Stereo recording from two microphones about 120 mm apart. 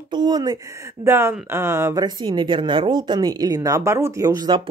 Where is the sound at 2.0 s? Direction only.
40° right (ahead or behind).